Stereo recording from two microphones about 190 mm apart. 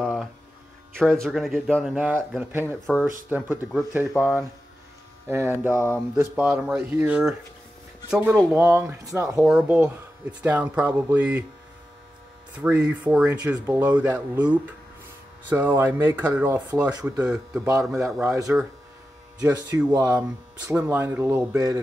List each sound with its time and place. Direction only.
0.0 s mains hum: centre (ahead or behind)
1.2 s speech: centre (ahead or behind)
8.7 s speech: 15° right (ahead or behind)
9.4 s speech: 5° right (ahead or behind)
12.5 s speech: 5° right (ahead or behind)
19.9 s speech: 15° right (ahead or behind)